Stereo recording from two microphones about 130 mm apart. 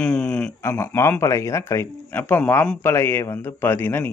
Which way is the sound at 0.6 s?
20° left (ahead or behind).